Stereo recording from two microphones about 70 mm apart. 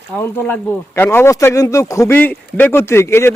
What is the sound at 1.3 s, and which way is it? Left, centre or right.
Speech, left.